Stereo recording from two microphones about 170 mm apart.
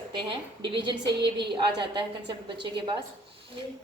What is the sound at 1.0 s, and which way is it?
Speech, 85° right.